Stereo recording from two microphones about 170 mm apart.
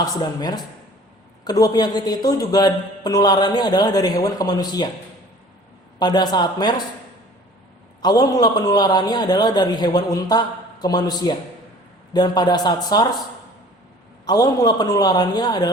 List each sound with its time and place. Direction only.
0.0 s speech: 25° left (ahead or behind)
6.0 s speech: 25° left (ahead or behind)
8.0 s speech: 25° left (ahead or behind)
14.3 s speech: 20° left (ahead or behind)